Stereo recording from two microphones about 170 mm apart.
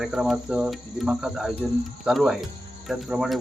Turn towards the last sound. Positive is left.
turn(degrees=-5)  # may be behind; listen again after turning